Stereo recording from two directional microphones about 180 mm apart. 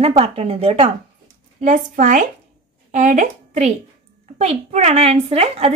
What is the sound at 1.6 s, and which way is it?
A woman's voice, 45° right (ahead or behind).